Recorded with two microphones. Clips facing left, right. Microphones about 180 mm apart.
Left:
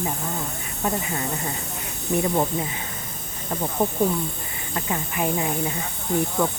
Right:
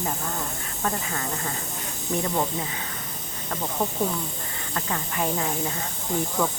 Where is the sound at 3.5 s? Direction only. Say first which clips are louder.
Left 4 dB; 15° left (ahead or behind).